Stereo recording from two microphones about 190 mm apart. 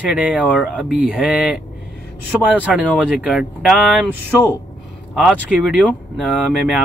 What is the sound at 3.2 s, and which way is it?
Speech, 5° right (ahead or behind).